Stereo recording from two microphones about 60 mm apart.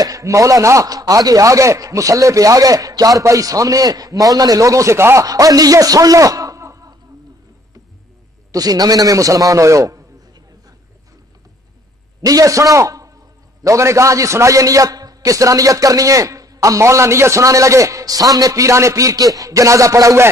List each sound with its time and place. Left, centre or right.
0.0 s a man's voice: right
5.2 s a man's voice: right
8.5 s a man's voice: right
12.2 s a man's voice: right